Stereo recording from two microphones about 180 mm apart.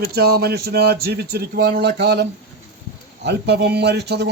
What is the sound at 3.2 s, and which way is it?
A man's voice, 70° right (ahead or behind).